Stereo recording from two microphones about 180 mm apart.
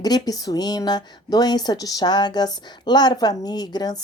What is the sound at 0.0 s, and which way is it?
Speech, 20° left (ahead or behind).